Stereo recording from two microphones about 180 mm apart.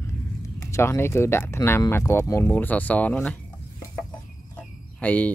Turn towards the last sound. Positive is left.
turn(degrees=10)  # may be behind; listen again after turning